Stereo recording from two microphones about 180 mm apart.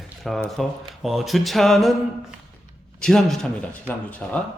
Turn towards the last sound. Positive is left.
turn(degrees=10)  # may be behind; listen again after turning